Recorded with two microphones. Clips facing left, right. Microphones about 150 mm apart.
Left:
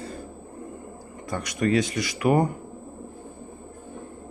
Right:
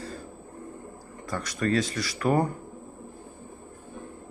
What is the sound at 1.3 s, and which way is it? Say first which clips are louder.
Speech: left 3 dB; 15° left (ahead or behind).